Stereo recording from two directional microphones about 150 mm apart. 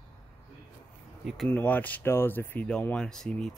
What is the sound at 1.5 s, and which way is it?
Speech, 10° left (ahead or behind).